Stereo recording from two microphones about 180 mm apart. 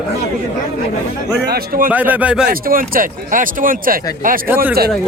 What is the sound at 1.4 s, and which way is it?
Speech, 55° right (ahead or behind).